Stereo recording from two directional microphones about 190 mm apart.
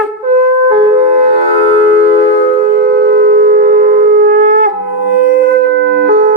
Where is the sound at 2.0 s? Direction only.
35° right (ahead or behind).